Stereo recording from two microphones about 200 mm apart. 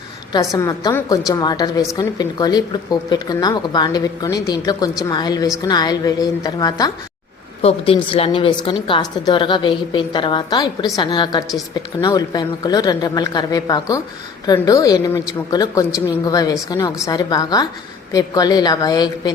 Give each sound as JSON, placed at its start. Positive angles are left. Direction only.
{"t": 0.3, "sound": "a woman's voice", "side_deg": 20}